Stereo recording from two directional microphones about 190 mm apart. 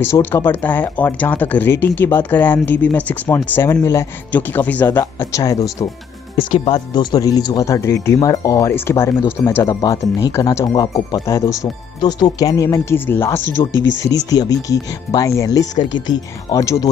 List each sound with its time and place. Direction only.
0.0 s speech: 10° left (ahead or behind)
6.3 s speech: 30° left (ahead or behind)